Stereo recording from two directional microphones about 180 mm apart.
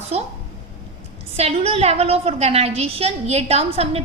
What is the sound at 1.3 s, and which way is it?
A woman's voice, 35° right (ahead or behind).